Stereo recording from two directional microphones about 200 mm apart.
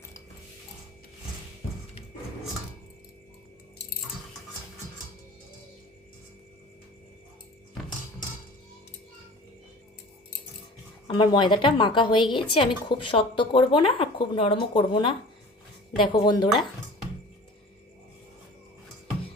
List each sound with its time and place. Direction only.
11.1 s a woman's voice: 20° left (ahead or behind)